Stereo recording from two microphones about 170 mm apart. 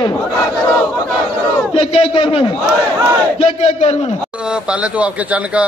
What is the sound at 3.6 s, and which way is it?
Speech, 40° left (ahead or behind).